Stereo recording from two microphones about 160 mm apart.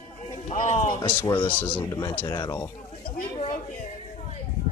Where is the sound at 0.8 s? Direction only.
30° left (ahead or behind).